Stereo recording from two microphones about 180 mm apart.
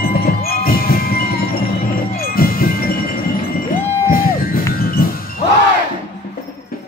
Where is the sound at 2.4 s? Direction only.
55° left (ahead or behind).